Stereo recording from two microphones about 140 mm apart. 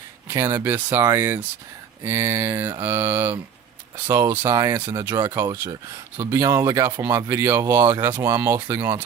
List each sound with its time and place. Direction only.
0.3 s speech: 20° right (ahead or behind)
5.4 s speech: 20° right (ahead or behind)